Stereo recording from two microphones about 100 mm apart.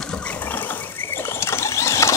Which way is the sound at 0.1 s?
10° left (ahead or behind).